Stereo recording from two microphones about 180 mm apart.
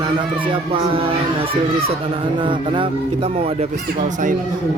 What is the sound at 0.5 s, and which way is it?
Speech, 30° right (ahead or behind).